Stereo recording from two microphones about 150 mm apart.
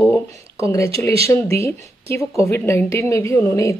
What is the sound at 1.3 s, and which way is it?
A woman's voice, 20° left (ahead or behind).